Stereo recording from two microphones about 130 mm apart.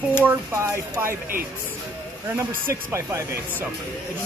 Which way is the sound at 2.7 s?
20° right (ahead or behind).